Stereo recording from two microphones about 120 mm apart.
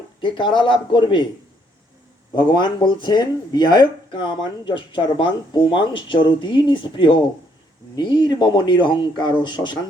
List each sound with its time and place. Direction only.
0.2 s speech: 40° left (ahead or behind)
2.3 s speech: 40° left (ahead or behind)